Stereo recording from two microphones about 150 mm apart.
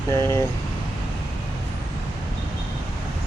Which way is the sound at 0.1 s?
20° left (ahead or behind).